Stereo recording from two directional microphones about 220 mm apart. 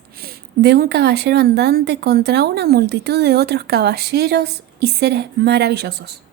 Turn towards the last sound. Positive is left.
turn(degrees=-50)  # may be behind; listen again after turning